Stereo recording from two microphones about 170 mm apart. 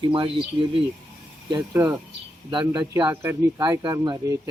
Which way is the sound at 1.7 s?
15° right (ahead or behind).